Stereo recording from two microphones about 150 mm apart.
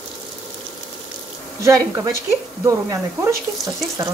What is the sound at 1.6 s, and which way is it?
Speech, 20° right (ahead or behind).